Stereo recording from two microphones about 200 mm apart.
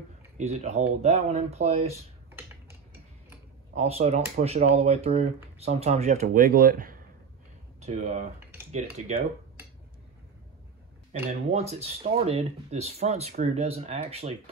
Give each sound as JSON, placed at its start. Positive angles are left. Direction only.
{"t": 0.4, "sound": "speech", "side_deg": -35}
{"t": 3.7, "sound": "speech", "side_deg": -30}
{"t": 11.2, "sound": "speech", "side_deg": -30}